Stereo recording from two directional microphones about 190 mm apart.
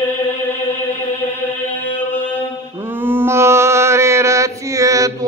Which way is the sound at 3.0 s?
10° right (ahead or behind).